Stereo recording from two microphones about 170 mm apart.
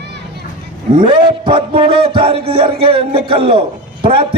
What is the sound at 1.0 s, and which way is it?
A man's voice, 30° right (ahead or behind).